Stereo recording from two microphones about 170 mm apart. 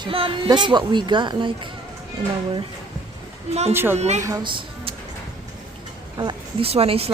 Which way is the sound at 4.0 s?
40° right (ahead or behind).